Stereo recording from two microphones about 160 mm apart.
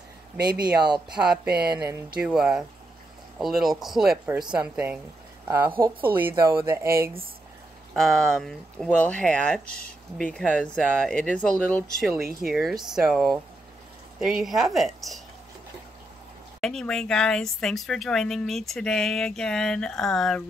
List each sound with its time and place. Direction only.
1.1 s a woman's voice: 5° right (ahead or behind)
6.3 s speech: 20° right (ahead or behind)
7.9 s speech: centre (ahead or behind)
12.2 s speech: 65° right (ahead or behind)
12.4 s speech: centre (ahead or behind)
16.6 s speech: 5° left (ahead or behind)